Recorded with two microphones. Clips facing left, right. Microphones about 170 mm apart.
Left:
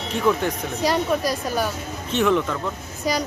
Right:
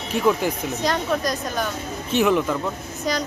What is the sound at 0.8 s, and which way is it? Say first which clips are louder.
Speech: left 2 dB; 10° left (ahead or behind).